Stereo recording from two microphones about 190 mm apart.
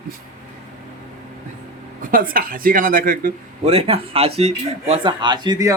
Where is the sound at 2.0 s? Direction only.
50° right (ahead or behind).